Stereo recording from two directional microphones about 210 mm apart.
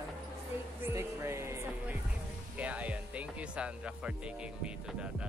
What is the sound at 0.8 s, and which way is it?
Music, 15° right (ahead or behind).